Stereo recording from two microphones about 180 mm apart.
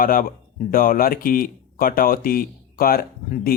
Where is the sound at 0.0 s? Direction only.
50° left (ahead or behind).